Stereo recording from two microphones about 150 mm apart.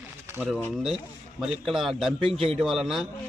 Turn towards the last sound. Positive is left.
turn(degrees=-5)  # may be behind; listen again after turning